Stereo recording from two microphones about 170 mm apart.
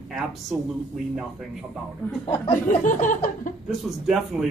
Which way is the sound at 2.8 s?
50° left (ahead or behind).